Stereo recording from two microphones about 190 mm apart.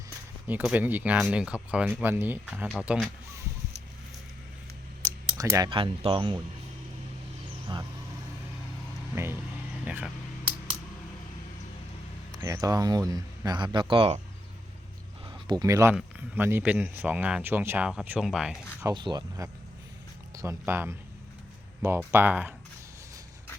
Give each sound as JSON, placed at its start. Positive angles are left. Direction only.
{"t": 0.4, "sound": "speech", "side_deg": -10}
{"t": 5.4, "sound": "speech", "side_deg": -20}
{"t": 7.7, "sound": "speech", "side_deg": -25}
{"t": 9.1, "sound": "speech", "side_deg": -10}
{"t": 12.4, "sound": "speech", "side_deg": -20}
{"t": 15.3, "sound": "speech", "side_deg": -20}
{"t": 18.8, "sound": "speech", "side_deg": -20}